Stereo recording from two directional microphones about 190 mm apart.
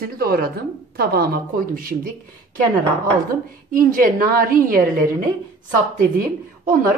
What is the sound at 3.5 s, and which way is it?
A woman's voice, 50° right (ahead or behind).